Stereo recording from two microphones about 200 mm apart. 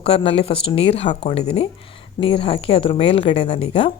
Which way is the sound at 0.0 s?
30° left (ahead or behind).